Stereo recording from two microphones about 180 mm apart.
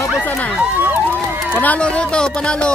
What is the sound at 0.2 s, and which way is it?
Speech, 10° left (ahead or behind).